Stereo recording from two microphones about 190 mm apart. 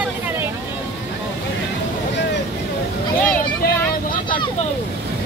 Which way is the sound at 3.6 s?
50° left (ahead or behind).